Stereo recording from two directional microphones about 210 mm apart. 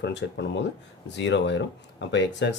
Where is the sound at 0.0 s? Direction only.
55° left (ahead or behind).